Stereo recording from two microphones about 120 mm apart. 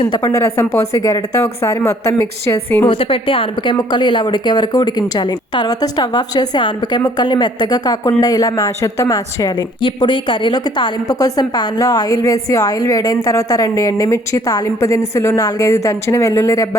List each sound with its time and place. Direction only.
0.2 s a woman's voice: 30° left (ahead or behind)
2.8 s a woman's voice: 50° left (ahead or behind); by 16.6 s 25° left (ahead or behind)